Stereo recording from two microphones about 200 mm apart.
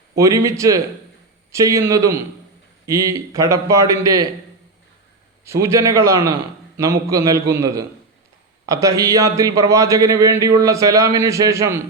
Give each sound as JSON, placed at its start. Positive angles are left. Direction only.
{"t": 0.2, "sound": "speech", "side_deg": -15}
{"t": 5.5, "sound": "speech", "side_deg": -15}